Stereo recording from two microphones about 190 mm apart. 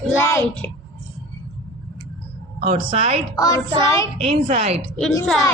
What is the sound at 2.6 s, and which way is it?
Speech, 30° right (ahead or behind).